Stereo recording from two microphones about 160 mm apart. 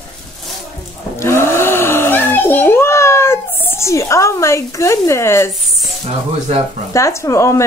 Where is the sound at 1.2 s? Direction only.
15° left (ahead or behind).